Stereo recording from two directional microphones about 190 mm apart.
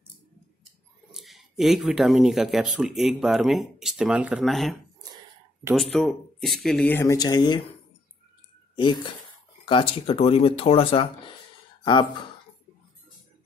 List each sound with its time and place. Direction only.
1.1 s speech: centre (ahead or behind)
5.8 s speech: centre (ahead or behind); by 7.6 s 20° left (ahead or behind)
8.7 s speech: 25° left (ahead or behind)